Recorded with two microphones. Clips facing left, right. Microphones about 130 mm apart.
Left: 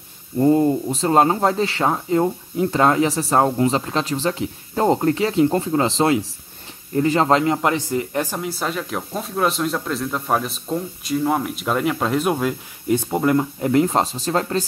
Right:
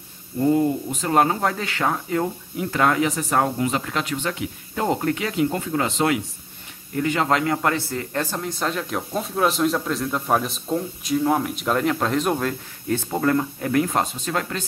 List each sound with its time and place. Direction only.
0.4 s speech: 30° left (ahead or behind)